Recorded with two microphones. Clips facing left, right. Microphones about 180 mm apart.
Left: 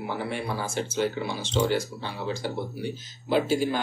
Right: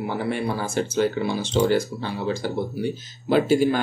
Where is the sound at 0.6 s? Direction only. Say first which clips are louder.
Right 5 dB; 65° right (ahead or behind).